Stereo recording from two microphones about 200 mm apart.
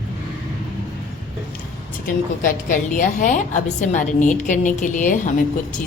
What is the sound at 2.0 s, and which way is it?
A woman's voice, 40° left (ahead or behind).